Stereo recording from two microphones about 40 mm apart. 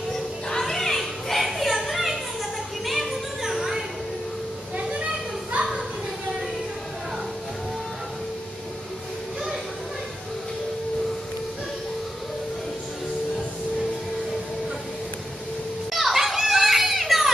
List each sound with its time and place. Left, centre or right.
0.1 s a sound: centre
2.8 s children playing: centre
5.5 s children playing: right
15.9 s children playing: centre